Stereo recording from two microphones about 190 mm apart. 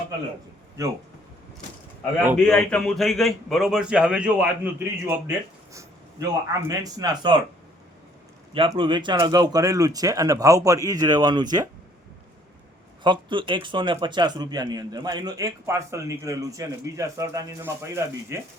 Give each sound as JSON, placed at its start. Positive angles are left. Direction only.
{"t": 0.8, "sound": "speech", "side_deg": -15}
{"t": 2.5, "sound": "a man's voice", "side_deg": 5}
{"t": 8.5, "sound": "a man's voice", "side_deg": -25}
{"t": 13.0, "sound": "a man's voice", "side_deg": -25}